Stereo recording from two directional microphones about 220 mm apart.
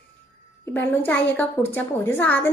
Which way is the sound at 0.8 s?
10° left (ahead or behind).